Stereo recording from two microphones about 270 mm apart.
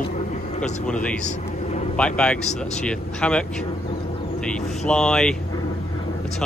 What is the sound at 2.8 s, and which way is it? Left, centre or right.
Speech, centre.